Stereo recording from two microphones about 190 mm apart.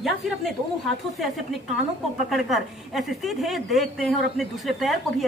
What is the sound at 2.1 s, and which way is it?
A woman's voice, centre (ahead or behind).